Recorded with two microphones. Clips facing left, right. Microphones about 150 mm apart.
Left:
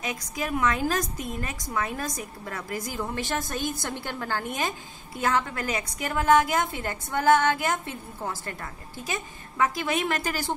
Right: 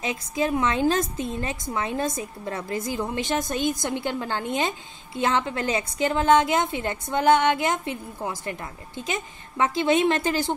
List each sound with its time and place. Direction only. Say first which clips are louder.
0.0 s a woman's voice: right 6 dB; 25° right (ahead or behind)